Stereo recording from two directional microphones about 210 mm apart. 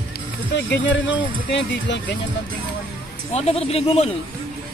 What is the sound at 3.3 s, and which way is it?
Speech, 30° left (ahead or behind).